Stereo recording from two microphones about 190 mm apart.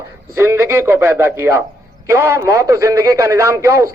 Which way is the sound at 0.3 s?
15° right (ahead or behind).